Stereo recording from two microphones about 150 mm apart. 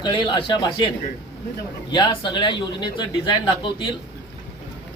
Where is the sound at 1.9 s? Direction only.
30° left (ahead or behind).